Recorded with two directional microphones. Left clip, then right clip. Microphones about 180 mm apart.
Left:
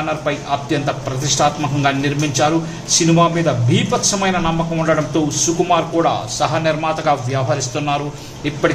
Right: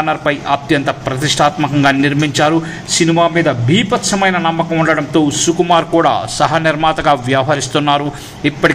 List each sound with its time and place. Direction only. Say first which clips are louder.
0.1 s speech: right 5 dB; 25° right (ahead or behind)